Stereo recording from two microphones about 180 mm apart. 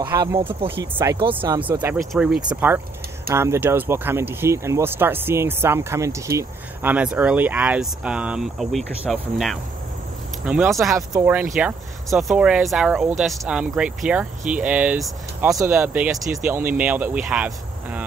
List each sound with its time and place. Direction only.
0.0 s speech: 15° right (ahead or behind)